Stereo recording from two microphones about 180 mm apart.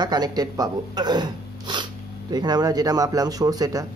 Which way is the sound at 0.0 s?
20° right (ahead or behind).